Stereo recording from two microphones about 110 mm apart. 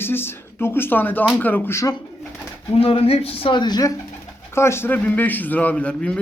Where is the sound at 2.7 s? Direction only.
60° left (ahead or behind); by 3.9 s 35° left (ahead or behind).